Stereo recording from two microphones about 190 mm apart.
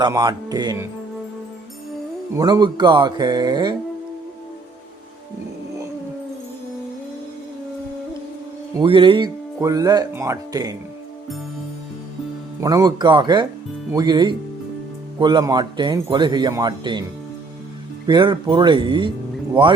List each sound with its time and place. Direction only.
0.0 s speech: 20° right (ahead or behind)
2.3 s speech: 20° right (ahead or behind)
8.8 s speech: 25° right (ahead or behind)
12.5 s speech: 20° right (ahead or behind)
18.0 s speech: 25° right (ahead or behind)